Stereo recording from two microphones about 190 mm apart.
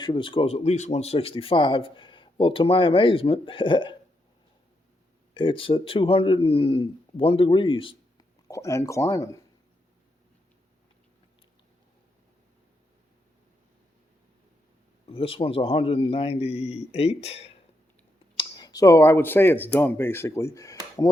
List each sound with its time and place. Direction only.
0.0 s speech: 25° left (ahead or behind)
5.3 s speech: 25° left (ahead or behind)
15.0 s a man's voice: 30° left (ahead or behind)
18.3 s speech: 20° left (ahead or behind)